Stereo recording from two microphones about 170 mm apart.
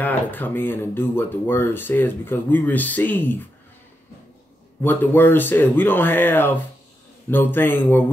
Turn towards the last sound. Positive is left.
turn(degrees=10)  # may be behind; listen again after turning